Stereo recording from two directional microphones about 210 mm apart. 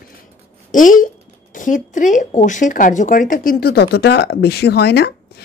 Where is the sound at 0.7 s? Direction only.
40° left (ahead or behind).